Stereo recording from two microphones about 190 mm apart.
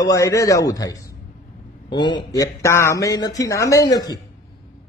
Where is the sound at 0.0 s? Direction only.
15° left (ahead or behind).